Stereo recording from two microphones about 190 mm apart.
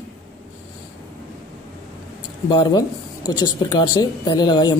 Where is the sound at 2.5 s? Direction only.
25° left (ahead or behind).